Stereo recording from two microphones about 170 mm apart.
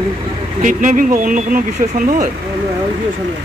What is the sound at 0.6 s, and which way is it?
Speech, 50° right (ahead or behind).